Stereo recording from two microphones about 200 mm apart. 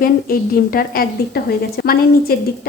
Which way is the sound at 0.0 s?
45° left (ahead or behind).